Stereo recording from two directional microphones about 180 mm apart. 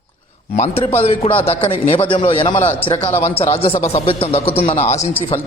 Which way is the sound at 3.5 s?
35° left (ahead or behind).